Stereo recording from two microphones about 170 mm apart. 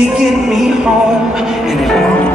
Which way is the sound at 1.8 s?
Centre (ahead or behind).